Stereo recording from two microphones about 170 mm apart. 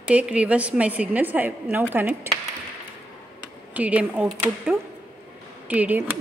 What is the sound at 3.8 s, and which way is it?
A woman's voice, 10° right (ahead or behind).